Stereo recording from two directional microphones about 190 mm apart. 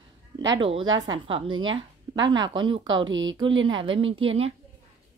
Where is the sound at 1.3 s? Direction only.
25° right (ahead or behind).